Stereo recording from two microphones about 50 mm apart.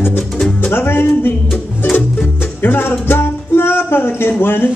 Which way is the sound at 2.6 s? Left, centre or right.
Left.